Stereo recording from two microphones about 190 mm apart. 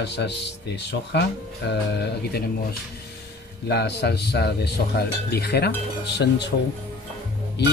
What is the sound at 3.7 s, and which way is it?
Speech, 60° left (ahead or behind).